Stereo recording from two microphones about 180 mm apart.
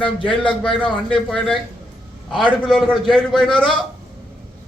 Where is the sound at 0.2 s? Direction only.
25° left (ahead or behind).